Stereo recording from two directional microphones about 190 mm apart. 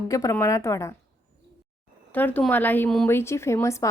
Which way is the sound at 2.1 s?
10° left (ahead or behind).